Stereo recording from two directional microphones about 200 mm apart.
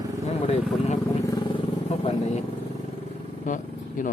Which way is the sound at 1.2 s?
25° left (ahead or behind).